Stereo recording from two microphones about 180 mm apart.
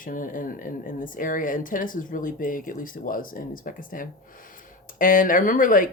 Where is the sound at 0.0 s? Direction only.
50° left (ahead or behind).